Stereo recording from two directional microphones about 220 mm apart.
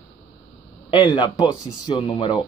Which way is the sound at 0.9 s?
20° left (ahead or behind).